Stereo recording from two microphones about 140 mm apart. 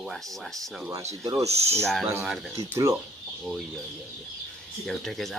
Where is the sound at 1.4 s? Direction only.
50° right (ahead or behind).